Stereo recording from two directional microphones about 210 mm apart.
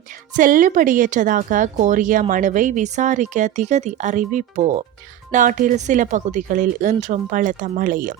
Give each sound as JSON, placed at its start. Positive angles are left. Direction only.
{"t": 0.3, "sound": "speech", "side_deg": -40}